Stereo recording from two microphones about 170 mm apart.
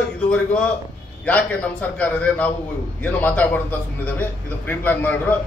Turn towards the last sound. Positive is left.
turn(degrees=10)  # may be behind; listen again after turning